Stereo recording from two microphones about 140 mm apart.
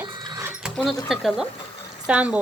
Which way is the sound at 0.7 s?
Centre (ahead or behind).